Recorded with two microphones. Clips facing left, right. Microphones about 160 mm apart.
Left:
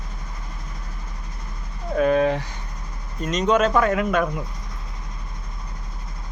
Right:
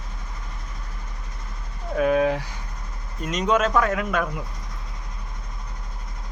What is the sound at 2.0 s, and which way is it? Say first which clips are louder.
Speech: left 1 dB; 5° right (ahead or behind).